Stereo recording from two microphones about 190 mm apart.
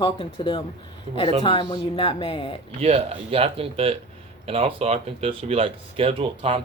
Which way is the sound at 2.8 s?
30° right (ahead or behind).